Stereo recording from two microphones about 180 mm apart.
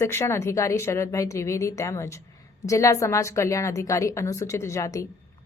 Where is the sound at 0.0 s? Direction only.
15° left (ahead or behind).